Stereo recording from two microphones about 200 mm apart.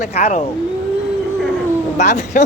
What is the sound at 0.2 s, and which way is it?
Speech, 35° left (ahead or behind).